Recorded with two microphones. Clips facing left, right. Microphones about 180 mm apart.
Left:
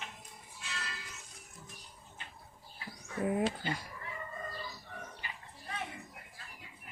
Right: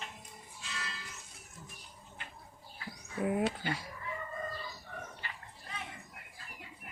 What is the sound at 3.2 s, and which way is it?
Speech, centre (ahead or behind).